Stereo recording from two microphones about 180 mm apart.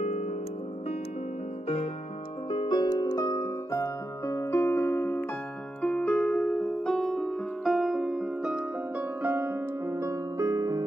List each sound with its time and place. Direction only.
0.0 s music: 35° left (ahead or behind)
2.5 s music: 25° left (ahead or behind); by 10.8 s 20° right (ahead or behind)